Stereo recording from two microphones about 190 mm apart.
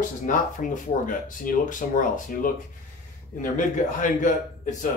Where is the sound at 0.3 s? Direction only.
45° left (ahead or behind).